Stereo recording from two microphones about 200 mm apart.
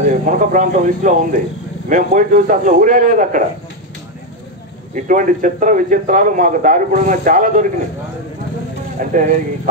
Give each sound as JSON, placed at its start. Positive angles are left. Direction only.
{"t": 0.0, "sound": "a man's voice", "side_deg": -40}
{"t": 4.9, "sound": "a man's voice", "side_deg": -40}
{"t": 9.1, "sound": "a man's voice", "side_deg": -40}